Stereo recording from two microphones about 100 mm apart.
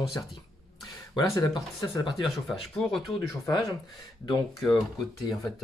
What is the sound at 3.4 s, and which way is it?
Speech, 45° left (ahead or behind).